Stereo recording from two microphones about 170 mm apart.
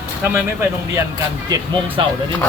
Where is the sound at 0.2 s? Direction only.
15° right (ahead or behind).